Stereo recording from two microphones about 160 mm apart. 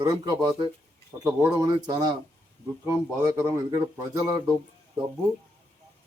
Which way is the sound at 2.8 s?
20° right (ahead or behind).